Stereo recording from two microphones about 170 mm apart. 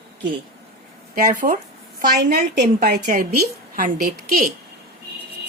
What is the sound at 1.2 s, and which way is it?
A woman's voice, 50° right (ahead or behind).